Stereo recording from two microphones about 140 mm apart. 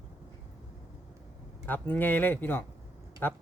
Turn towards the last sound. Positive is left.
turn(degrees=15)  # may be behind; listen again after turning